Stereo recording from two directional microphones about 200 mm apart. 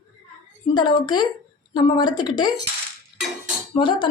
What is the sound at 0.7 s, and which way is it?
A woman's voice, 20° left (ahead or behind).